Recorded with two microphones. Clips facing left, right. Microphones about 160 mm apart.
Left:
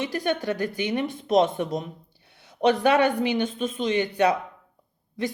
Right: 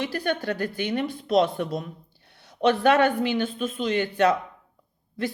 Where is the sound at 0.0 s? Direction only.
20° left (ahead or behind).